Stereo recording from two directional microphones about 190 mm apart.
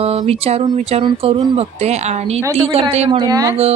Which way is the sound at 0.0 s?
35° right (ahead or behind).